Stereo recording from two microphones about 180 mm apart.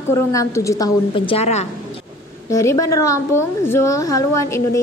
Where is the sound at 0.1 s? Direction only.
15° left (ahead or behind); by 1.7 s 35° left (ahead or behind).